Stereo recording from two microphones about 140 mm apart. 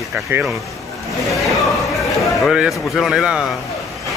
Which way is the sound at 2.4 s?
Centre (ahead or behind).